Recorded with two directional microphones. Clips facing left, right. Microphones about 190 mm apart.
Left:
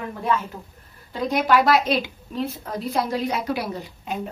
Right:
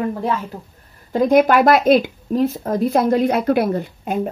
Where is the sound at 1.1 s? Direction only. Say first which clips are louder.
Right 7 dB; 50° right (ahead or behind).